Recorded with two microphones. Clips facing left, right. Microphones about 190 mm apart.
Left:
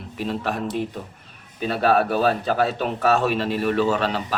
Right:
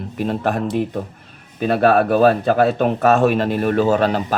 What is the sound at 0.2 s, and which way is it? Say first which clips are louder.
Speech: right 5 dB; 50° right (ahead or behind).